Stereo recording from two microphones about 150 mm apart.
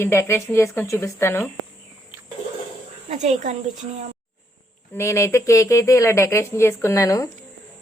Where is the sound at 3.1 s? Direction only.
50° right (ahead or behind).